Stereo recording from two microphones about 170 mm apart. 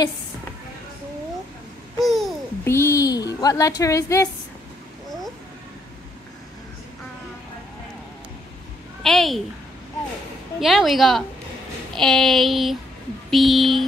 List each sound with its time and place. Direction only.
2.0 s babbling: centre (ahead or behind)
2.6 s a sound: 15° left (ahead or behind)
9.0 s child singing: centre (ahead or behind)
10.6 s child singing: centre (ahead or behind)